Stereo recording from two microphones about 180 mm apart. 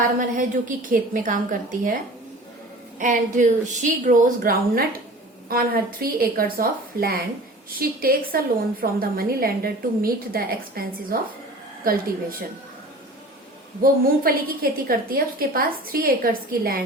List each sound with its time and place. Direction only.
0.2 s a woman's voice: 45° right (ahead or behind)
3.0 s a woman's voice: 45° right (ahead or behind)
13.8 s a woman's voice: 55° right (ahead or behind)